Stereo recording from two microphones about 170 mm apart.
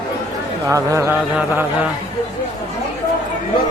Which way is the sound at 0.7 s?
20° right (ahead or behind).